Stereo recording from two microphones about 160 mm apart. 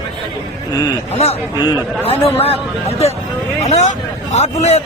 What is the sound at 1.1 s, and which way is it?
Speech, 40° left (ahead or behind).